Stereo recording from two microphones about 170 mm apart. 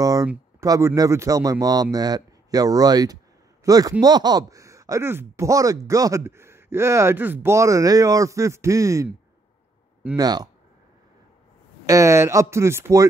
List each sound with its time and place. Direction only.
0.0 s a sound: 20° right (ahead or behind)
0.6 s a man's voice: 15° right (ahead or behind)
10.1 s speech: 25° right (ahead or behind)
11.8 s speech: 20° right (ahead or behind)